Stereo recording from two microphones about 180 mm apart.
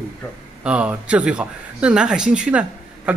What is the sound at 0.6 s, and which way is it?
A man's voice, 5° right (ahead or behind).